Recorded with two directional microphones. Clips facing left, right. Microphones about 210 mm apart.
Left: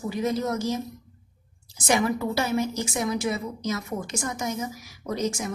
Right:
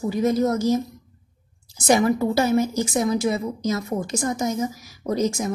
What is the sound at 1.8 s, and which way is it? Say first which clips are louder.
A woman's voice: right 5 dB; 40° right (ahead or behind).